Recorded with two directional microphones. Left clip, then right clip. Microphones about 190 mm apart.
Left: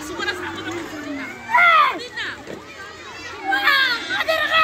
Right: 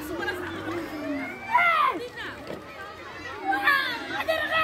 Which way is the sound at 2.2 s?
30° right (ahead or behind).